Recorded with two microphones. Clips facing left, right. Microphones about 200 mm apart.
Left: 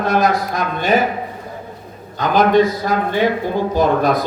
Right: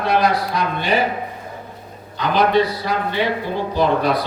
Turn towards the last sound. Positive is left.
turn(degrees=45)  # may be behind; listen again after turning